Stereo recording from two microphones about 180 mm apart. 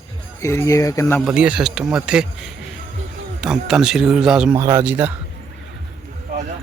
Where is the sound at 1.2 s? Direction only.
5° right (ahead or behind).